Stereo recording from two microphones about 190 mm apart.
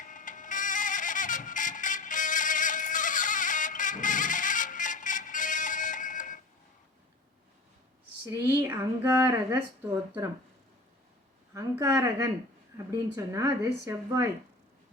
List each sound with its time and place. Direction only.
0.0 s music: 45° left (ahead or behind)
8.4 s speech: 10° right (ahead or behind)
11.5 s speech: 15° right (ahead or behind)